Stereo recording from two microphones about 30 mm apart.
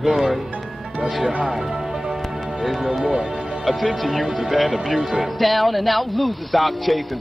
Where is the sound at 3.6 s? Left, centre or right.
Centre.